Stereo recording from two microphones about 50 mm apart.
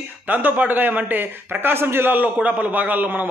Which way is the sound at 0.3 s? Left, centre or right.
Right.